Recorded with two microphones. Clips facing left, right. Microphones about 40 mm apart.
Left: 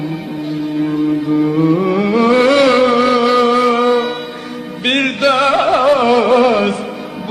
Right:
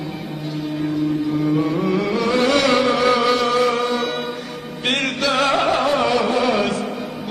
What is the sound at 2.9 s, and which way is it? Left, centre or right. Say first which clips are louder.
Music: left 5 dB; centre.